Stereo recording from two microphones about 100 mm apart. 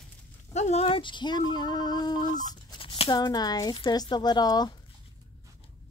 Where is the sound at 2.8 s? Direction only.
60° left (ahead or behind); by 4.7 s 45° left (ahead or behind).